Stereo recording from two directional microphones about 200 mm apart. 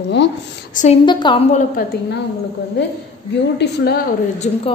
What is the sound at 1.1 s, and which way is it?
Speech, 25° left (ahead or behind).